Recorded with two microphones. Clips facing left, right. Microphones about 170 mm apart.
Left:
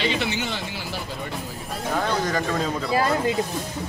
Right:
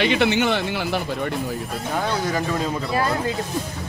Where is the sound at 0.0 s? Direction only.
60° right (ahead or behind).